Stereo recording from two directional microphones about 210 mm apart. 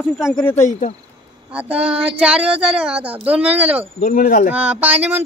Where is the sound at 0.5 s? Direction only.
35° left (ahead or behind).